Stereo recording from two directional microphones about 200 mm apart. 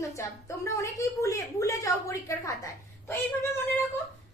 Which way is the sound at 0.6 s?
15° left (ahead or behind).